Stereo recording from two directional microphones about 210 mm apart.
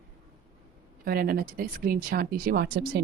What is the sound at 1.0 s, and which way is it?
Speech, 45° right (ahead or behind).